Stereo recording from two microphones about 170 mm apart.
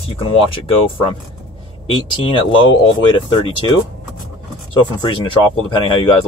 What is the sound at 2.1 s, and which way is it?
Speech, 30° left (ahead or behind).